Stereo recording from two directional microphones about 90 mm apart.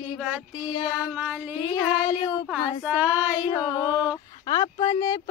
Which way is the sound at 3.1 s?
40° left (ahead or behind).